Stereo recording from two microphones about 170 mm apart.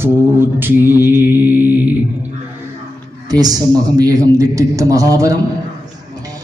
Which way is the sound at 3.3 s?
20° right (ahead or behind).